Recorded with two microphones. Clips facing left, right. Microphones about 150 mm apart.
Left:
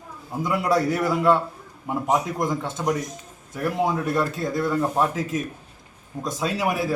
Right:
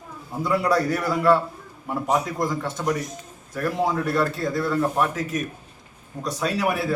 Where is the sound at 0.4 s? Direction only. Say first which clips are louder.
Even; 20° left (ahead or behind).